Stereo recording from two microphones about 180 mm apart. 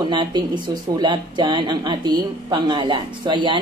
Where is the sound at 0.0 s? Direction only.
25° right (ahead or behind).